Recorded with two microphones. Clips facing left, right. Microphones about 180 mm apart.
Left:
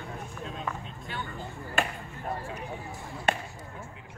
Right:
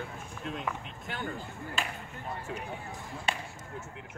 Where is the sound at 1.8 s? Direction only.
60° left (ahead or behind).